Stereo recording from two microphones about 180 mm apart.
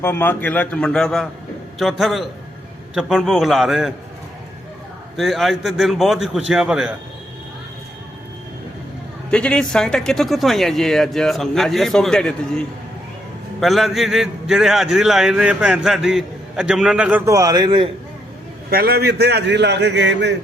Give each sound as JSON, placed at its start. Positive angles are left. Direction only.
{"t": 0.0, "sound": "a man's voice", "side_deg": 10}
{"t": 5.1, "sound": "a man's voice", "side_deg": 0}
{"t": 9.3, "sound": "a man's voice", "side_deg": 5}
{"t": 13.6, "sound": "a man's voice", "side_deg": 0}
{"t": 18.7, "sound": "a man's voice", "side_deg": -55}